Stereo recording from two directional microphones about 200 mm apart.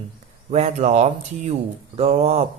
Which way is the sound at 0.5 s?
35° right (ahead or behind).